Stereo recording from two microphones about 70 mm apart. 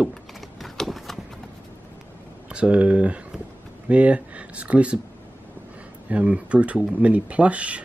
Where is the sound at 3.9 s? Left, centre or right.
Centre.